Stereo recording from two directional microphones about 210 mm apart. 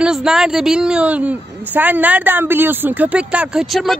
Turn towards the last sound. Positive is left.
turn(degrees=0)  # may be behind; listen again after turning